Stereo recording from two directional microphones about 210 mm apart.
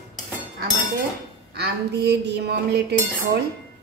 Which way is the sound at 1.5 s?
55° right (ahead or behind).